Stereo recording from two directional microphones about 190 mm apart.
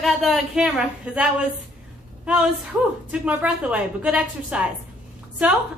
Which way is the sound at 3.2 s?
5° right (ahead or behind).